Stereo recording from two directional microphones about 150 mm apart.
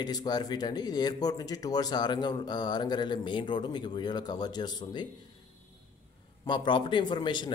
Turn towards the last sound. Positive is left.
turn(degrees=30)  # may be behind; listen again after turning